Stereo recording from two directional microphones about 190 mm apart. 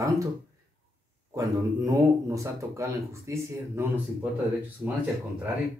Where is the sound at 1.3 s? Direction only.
15° right (ahead or behind).